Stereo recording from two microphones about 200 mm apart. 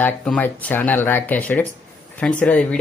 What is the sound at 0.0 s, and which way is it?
Speech, 5° left (ahead or behind).